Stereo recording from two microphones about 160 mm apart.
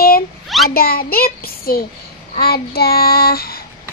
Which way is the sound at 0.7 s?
70° left (ahead or behind).